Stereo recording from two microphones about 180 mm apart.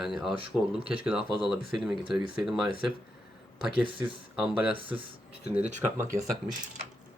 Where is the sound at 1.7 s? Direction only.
Centre (ahead or behind).